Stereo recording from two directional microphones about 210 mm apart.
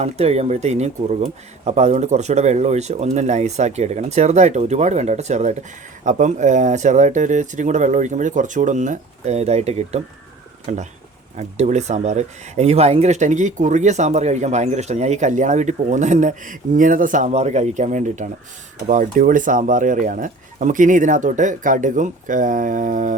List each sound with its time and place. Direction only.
0.0 s speech: 30° right (ahead or behind)